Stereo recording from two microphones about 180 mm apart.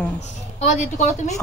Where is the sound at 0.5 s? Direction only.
40° left (ahead or behind).